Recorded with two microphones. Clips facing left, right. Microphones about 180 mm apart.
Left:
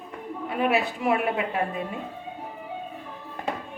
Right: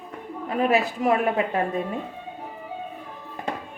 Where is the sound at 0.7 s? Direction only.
40° right (ahead or behind).